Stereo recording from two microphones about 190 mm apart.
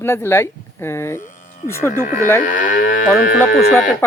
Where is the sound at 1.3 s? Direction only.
40° left (ahead or behind).